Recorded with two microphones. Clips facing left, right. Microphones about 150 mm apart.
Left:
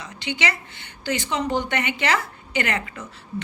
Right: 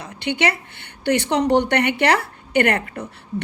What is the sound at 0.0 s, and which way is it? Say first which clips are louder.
A woman's voice: right 5 dB; 55° right (ahead or behind).